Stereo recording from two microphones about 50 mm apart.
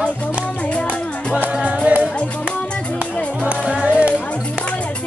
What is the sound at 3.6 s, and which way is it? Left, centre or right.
Music, right.